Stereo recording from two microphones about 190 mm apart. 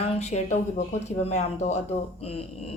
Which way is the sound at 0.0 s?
35° left (ahead or behind).